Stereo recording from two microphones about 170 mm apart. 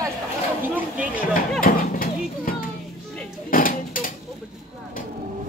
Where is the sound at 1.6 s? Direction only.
55° left (ahead or behind).